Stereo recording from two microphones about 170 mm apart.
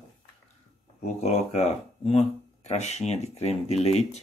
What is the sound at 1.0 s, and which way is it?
Speech, 40° left (ahead or behind).